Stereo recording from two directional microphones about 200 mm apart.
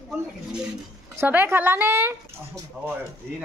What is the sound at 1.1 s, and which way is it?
Speech, 10° right (ahead or behind).